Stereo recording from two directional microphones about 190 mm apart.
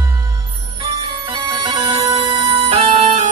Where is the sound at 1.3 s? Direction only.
25° right (ahead or behind).